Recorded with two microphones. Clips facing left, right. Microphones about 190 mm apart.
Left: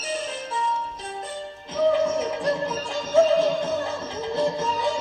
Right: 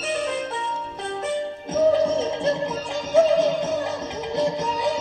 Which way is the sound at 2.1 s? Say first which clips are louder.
Right 2 dB; 25° right (ahead or behind).